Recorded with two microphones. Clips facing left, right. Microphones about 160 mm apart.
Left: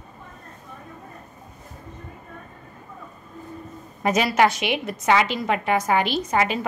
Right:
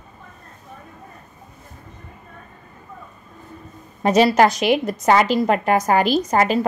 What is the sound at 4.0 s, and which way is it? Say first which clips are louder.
A woman's voice: right 5 dB; 30° right (ahead or behind).